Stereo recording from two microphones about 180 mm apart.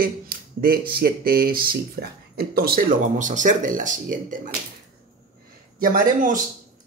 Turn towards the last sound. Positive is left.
turn(degrees=-45)  # may be behind; listen again after turning